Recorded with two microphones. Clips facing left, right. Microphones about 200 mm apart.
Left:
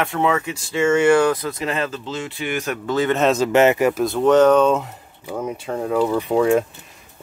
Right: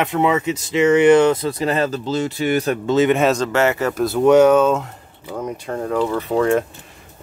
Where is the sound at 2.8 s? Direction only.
20° right (ahead or behind).